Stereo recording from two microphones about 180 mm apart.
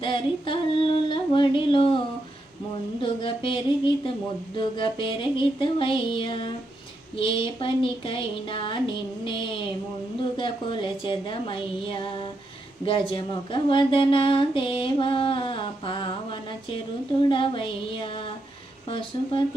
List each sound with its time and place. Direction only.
0.0 s female singing: 30° left (ahead or behind)
3.0 s speech: 30° left (ahead or behind)